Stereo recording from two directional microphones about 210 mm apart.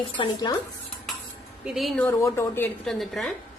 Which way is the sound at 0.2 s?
20° left (ahead or behind).